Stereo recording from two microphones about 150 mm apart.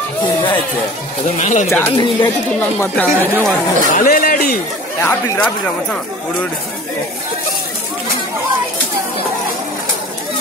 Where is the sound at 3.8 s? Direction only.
65° left (ahead or behind).